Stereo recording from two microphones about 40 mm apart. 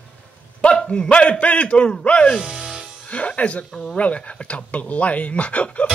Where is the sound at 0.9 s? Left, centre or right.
Left.